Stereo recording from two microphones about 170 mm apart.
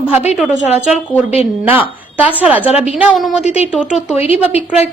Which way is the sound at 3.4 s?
40° left (ahead or behind).